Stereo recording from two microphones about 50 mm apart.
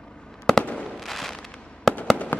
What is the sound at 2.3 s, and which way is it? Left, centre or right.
Fireworks, left.